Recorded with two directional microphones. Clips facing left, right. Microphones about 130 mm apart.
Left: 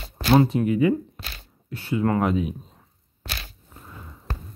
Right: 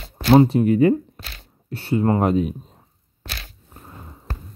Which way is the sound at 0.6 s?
45° right (ahead or behind).